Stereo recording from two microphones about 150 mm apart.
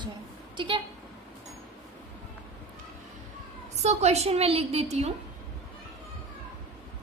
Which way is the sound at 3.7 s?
50° right (ahead or behind).